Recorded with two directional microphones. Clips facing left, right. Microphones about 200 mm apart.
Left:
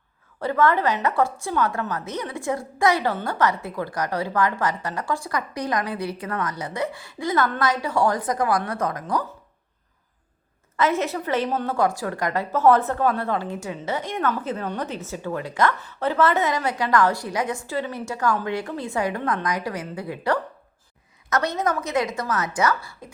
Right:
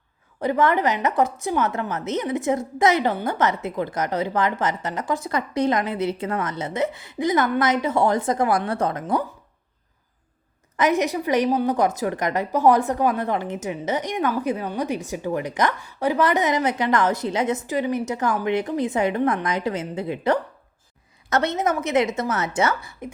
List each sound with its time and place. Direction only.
0.3 s a woman's voice: 15° right (ahead or behind)
10.8 s a woman's voice: 15° right (ahead or behind)